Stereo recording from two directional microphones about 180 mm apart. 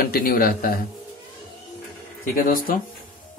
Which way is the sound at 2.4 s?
50° left (ahead or behind).